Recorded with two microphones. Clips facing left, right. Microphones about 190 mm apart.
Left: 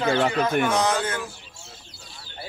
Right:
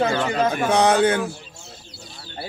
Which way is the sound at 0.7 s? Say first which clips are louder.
Right 6 dB; 65° right (ahead or behind).